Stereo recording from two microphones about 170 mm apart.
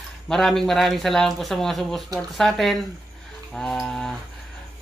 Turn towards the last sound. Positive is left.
turn(degrees=5)  # may be behind; listen again after turning